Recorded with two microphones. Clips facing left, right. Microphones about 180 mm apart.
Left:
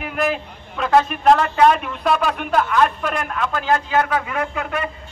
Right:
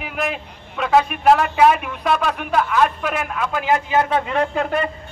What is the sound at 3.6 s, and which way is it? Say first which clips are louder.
A man's voice: right 1 dB; 20° right (ahead or behind).